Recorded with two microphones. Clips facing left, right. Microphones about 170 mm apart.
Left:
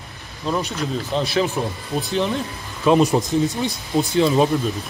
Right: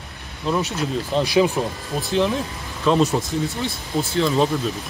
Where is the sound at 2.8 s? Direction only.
15° left (ahead or behind).